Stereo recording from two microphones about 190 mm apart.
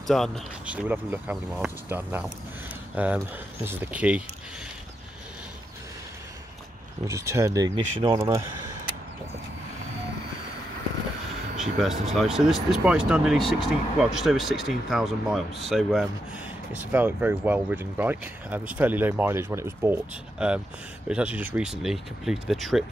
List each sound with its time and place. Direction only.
0.0 s speech: centre (ahead or behind)
7.1 s speech: 15° right (ahead or behind)
11.6 s speech: centre (ahead or behind)